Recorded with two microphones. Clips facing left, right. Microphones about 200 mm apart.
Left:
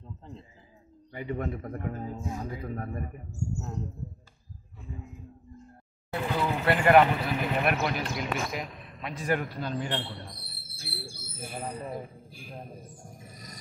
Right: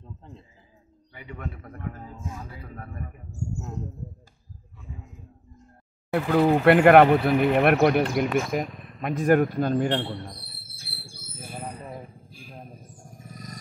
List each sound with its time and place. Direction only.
1.1 s a man's voice: 40° left (ahead or behind)
6.3 s speech: 60° right (ahead or behind)